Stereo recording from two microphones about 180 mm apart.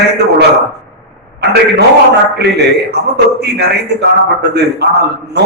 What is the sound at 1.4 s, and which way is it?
A man's voice, 65° right (ahead or behind).